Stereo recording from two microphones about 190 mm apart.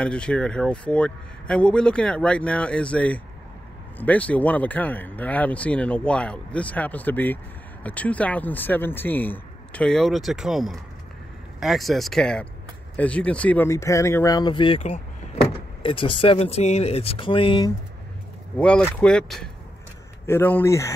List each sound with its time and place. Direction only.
0.0 s a man's voice: 5° left (ahead or behind); by 17.7 s 25° left (ahead or behind)
18.6 s a man's voice: 5° left (ahead or behind)